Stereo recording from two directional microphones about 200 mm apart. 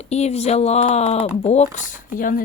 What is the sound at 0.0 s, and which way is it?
Speech, 30° left (ahead or behind).